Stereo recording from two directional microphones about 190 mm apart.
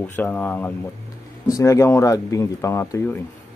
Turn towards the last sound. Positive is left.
turn(degrees=15)  # may be behind; listen again after turning